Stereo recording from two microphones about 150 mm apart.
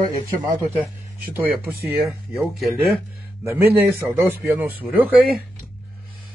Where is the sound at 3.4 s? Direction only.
15° right (ahead or behind).